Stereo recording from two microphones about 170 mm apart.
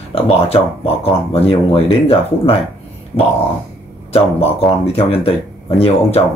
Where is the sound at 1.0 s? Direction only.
35° left (ahead or behind).